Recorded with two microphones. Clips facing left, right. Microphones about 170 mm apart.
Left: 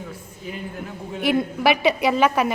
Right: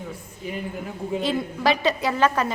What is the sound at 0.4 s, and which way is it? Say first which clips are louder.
Speech: right 2 dB; centre (ahead or behind).